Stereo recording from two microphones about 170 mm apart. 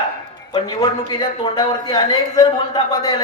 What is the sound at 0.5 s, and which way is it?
A woman's voice, 25° left (ahead or behind).